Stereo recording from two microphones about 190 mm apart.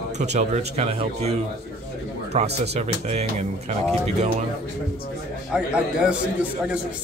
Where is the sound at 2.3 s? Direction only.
35° right (ahead or behind).